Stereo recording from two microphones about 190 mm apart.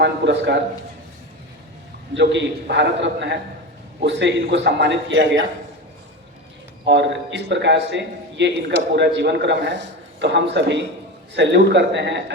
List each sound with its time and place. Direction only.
0.0 s a man's voice: 65° right (ahead or behind)
2.1 s a man's voice: 70° right (ahead or behind)
6.8 s a man's voice: 65° right (ahead or behind)